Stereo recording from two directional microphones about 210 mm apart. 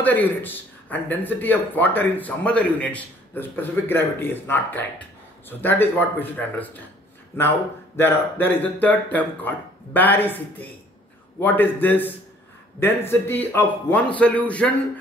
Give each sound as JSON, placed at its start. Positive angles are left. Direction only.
{"t": 0.0, "sound": "a man's voice", "side_deg": 10}